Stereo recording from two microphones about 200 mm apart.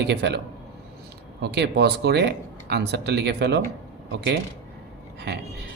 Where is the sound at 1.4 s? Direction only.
55° right (ahead or behind).